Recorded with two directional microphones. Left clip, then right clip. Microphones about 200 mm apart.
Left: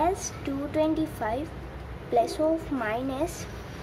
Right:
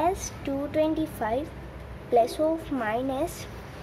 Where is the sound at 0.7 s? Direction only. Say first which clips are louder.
Even; 15° right (ahead or behind).